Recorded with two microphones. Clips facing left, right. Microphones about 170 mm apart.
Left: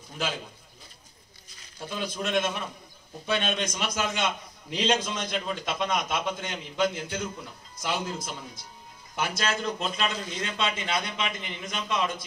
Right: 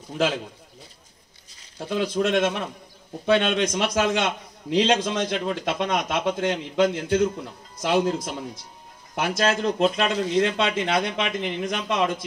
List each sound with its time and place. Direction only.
1.9 s a man's voice: 75° right (ahead or behind); by 12.1 s 60° right (ahead or behind)